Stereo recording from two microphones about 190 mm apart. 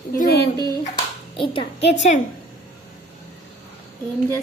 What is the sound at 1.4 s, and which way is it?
Speech, 30° left (ahead or behind).